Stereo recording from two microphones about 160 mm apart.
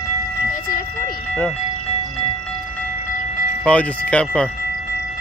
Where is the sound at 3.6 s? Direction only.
10° left (ahead or behind).